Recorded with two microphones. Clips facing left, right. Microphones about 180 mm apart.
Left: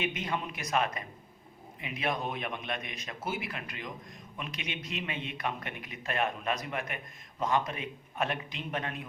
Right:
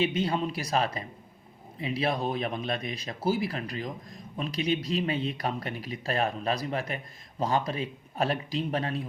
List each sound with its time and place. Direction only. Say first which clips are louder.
0.0 s speech: right 7 dB; 30° right (ahead or behind)